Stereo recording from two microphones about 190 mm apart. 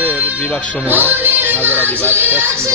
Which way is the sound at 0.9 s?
10° right (ahead or behind).